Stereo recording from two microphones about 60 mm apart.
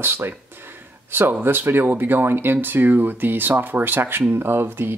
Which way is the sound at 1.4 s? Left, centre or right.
Right.